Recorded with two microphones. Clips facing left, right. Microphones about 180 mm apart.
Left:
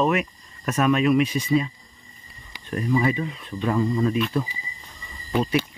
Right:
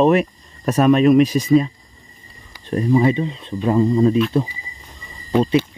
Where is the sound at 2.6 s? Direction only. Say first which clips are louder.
Right 6 dB; 30° right (ahead or behind).